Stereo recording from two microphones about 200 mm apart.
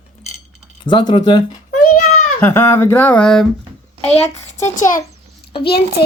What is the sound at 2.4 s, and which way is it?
Speech, 10° left (ahead or behind).